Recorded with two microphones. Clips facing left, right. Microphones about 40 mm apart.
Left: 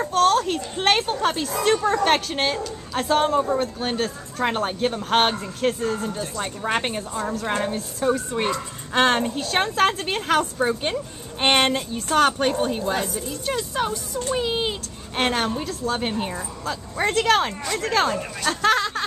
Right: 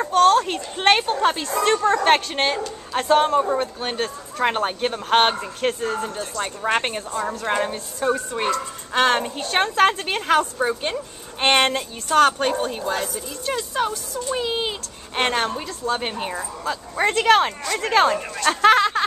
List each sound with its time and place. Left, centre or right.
0.3 s a woman's voice: centre
8.4 s a woman's voice: centre
17.8 s speech: right